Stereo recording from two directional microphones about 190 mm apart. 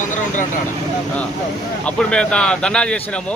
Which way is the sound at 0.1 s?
45° left (ahead or behind).